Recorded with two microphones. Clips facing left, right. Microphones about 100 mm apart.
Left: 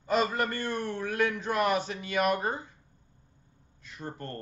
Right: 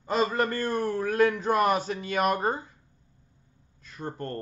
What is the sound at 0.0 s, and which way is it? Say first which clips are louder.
A man's voice: right 2 dB; 35° right (ahead or behind).